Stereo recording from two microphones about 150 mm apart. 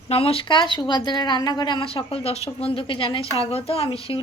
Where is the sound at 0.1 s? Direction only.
40° left (ahead or behind).